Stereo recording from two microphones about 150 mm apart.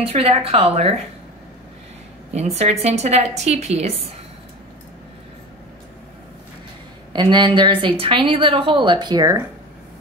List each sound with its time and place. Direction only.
0.0 s a woman's voice: 45° right (ahead or behind)
2.3 s a woman's voice: 45° right (ahead or behind)
7.1 s a woman's voice: 30° right (ahead or behind)